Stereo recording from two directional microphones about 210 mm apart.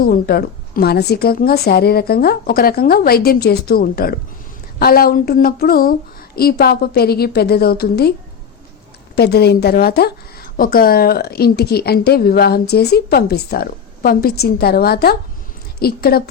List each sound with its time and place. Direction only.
0.0 s a woman's voice: 45° left (ahead or behind)
9.1 s a woman's voice: 50° left (ahead or behind)